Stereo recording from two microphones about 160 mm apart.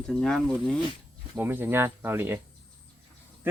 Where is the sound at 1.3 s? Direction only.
10° right (ahead or behind).